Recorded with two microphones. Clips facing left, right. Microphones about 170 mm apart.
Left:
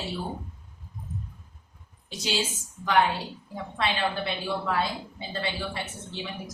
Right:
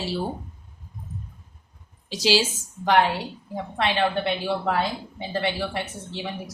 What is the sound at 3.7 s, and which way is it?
A woman's voice, 65° right (ahead or behind).